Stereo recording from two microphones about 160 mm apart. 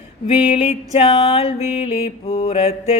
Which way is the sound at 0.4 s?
40° left (ahead or behind).